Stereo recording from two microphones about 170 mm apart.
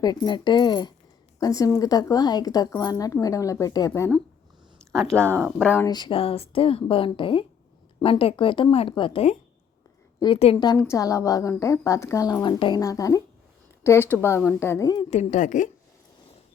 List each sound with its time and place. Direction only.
0.0 s a woman's voice: 25° left (ahead or behind)
5.1 s speech: 15° right (ahead or behind)
5.4 s a woman's voice: 5° left (ahead or behind)
5.9 s a woman's voice: 30° left (ahead or behind)
15.1 s a woman's voice: 45° left (ahead or behind)